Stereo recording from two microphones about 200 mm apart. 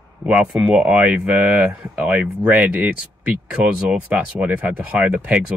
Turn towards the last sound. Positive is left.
turn(degrees=-5)  # may be behind; listen again after turning